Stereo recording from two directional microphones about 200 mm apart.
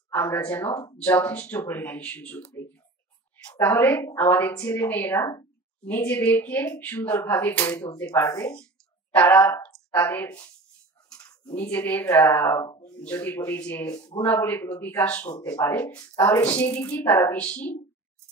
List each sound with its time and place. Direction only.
0.1 s a woman's voice: 10° left (ahead or behind)
11.1 s a sound: 20° left (ahead or behind)
11.5 s a woman's voice: 10° left (ahead or behind)